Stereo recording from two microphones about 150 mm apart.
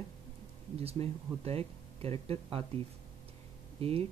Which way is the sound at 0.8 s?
40° right (ahead or behind).